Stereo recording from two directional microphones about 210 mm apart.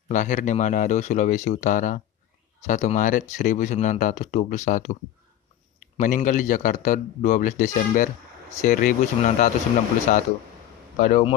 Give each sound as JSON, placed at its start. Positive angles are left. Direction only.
{"t": 0.1, "sound": "speech", "side_deg": 35}
{"t": 5.9, "sound": "speech", "side_deg": 35}